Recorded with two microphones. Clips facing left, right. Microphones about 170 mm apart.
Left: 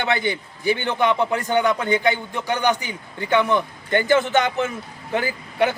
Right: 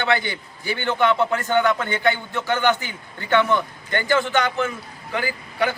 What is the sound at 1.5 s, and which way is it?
A man's voice, 15° left (ahead or behind).